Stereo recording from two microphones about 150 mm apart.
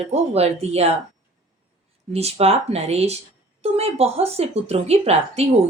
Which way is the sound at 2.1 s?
45° right (ahead or behind).